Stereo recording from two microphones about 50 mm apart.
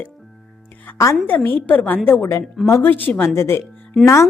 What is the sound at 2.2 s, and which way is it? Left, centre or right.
Speech, left.